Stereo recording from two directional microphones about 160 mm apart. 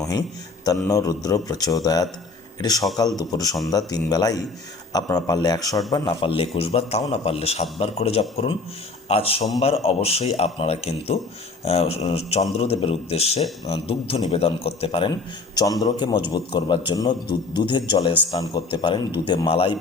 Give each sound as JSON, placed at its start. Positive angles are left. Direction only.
{"t": 0.0, "sound": "a man's voice", "side_deg": 20}
{"t": 15.5, "sound": "a man's voice", "side_deg": 20}